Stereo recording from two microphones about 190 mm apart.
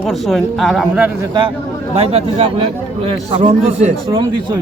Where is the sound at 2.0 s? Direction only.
30° right (ahead or behind).